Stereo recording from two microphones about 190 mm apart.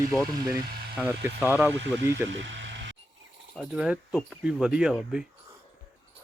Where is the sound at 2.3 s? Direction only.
75° right (ahead or behind).